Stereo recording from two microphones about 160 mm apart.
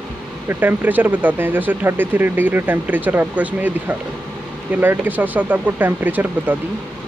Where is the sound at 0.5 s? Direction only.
10° right (ahead or behind).